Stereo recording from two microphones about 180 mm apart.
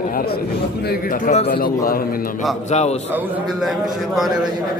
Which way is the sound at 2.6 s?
40° left (ahead or behind).